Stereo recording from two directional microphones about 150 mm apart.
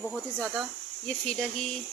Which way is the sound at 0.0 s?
Centre (ahead or behind).